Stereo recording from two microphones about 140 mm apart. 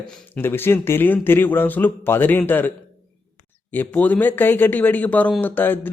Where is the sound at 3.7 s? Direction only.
10° left (ahead or behind).